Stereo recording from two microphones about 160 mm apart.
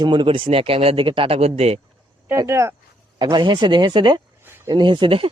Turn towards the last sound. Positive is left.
turn(degrees=-30)  # may be behind; listen again after turning